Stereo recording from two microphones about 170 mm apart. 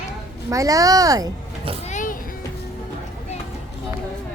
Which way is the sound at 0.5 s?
20° right (ahead or behind).